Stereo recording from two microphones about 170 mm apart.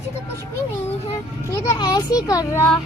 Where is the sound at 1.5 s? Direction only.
20° left (ahead or behind).